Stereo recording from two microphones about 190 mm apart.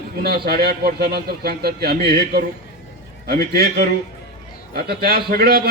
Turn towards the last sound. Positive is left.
turn(degrees=-55)  # may be behind; listen again after turning